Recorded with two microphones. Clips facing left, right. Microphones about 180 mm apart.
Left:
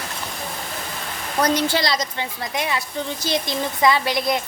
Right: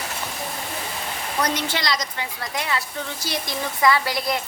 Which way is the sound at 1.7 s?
30° left (ahead or behind).